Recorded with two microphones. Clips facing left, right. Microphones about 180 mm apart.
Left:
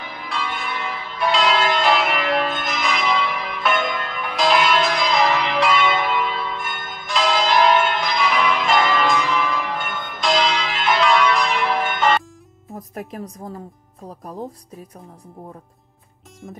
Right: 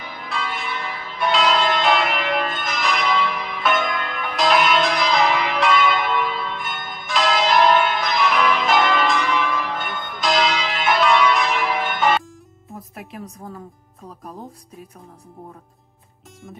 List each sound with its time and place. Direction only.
0.3 s church bell: centre (ahead or behind)
7.1 s change ringing: centre (ahead or behind)
12.7 s speech: 40° left (ahead or behind)